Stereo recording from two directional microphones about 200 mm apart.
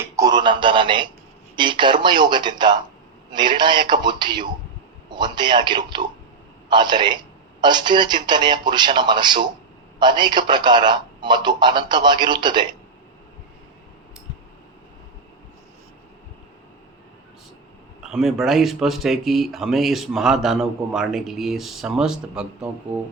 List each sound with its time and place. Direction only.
0.0 s speech: 20° right (ahead or behind)
18.0 s speech: centre (ahead or behind)